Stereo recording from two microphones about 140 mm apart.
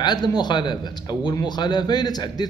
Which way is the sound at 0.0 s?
30° left (ahead or behind).